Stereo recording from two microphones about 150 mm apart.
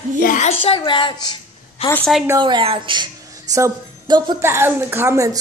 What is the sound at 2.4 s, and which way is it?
A woman's voice, 35° right (ahead or behind).